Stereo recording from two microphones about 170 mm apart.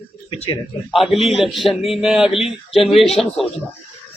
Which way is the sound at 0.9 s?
Centre (ahead or behind).